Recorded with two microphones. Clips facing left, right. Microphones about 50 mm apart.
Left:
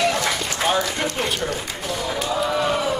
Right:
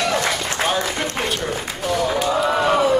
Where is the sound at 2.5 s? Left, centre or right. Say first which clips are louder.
Right 5 dB; right.